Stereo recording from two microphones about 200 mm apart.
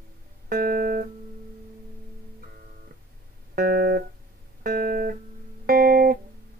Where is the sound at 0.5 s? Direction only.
45° right (ahead or behind).